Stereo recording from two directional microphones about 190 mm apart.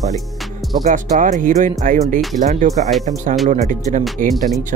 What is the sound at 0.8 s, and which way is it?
Speech, 40° right (ahead or behind).